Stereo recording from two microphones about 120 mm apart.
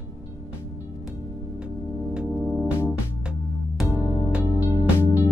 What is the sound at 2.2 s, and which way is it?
Music, centre (ahead or behind).